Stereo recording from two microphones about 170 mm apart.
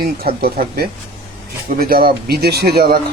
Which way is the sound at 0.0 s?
60° right (ahead or behind).